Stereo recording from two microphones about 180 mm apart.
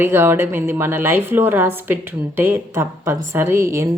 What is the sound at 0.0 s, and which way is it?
A woman's voice, 15° right (ahead or behind).